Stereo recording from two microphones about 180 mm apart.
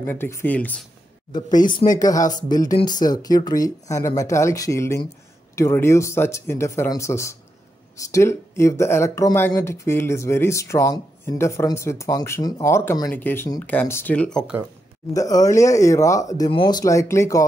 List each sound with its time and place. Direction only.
0.0 s speech: 10° left (ahead or behind)
1.7 s speech: 25° left (ahead or behind); by 14.4 s 5° left (ahead or behind)
15.1 s speech: 20° left (ahead or behind)